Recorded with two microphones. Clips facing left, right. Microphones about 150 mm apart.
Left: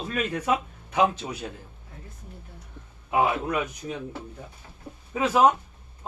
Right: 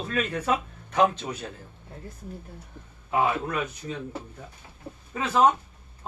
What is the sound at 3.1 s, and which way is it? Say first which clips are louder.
Speech: left 1 dB; 15° left (ahead or behind).